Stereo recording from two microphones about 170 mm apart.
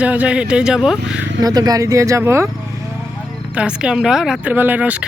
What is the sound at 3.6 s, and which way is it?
Speech, 5° right (ahead or behind).